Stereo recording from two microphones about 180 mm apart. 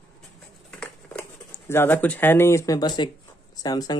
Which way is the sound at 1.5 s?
15° left (ahead or behind).